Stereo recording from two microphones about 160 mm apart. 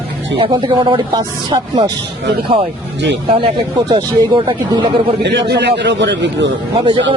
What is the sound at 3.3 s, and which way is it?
Speech, 30° right (ahead or behind).